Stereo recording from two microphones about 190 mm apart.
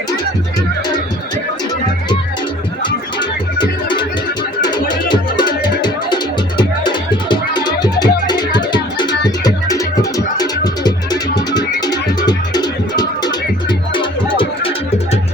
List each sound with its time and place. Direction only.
2.8 s music: 25° left (ahead or behind)